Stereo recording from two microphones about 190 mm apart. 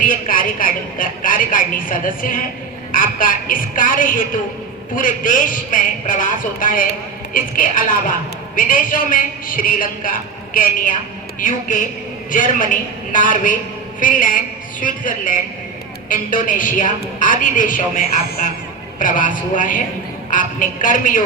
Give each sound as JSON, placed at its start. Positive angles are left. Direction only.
{"t": 0.0, "sound": "a man's voice", "side_deg": 45}